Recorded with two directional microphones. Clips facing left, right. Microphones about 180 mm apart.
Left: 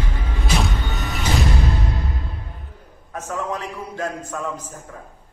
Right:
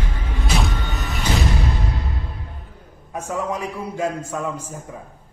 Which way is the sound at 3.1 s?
10° right (ahead or behind).